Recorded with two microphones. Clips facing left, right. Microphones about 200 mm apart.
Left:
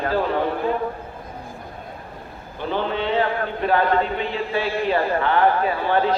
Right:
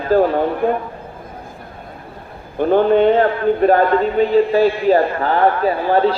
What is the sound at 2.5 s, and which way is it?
A man's voice, 50° right (ahead or behind).